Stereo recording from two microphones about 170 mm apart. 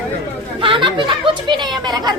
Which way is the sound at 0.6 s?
30° right (ahead or behind).